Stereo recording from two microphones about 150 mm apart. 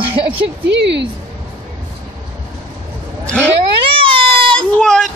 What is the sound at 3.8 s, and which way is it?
Baby cry, 35° right (ahead or behind).